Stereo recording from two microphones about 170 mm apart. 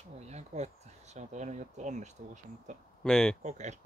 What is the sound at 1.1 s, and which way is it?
Speech, 45° right (ahead or behind).